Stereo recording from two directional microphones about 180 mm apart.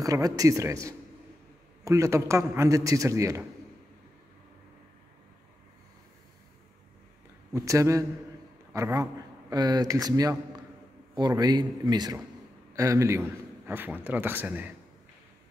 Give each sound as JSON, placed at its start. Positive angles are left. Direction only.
{"t": 0.0, "sound": "a man's voice", "side_deg": -20}
{"t": 7.5, "sound": "a man's voice", "side_deg": -15}